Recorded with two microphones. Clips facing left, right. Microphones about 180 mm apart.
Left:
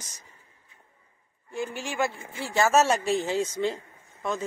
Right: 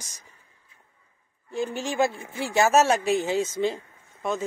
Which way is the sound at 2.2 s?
20° right (ahead or behind).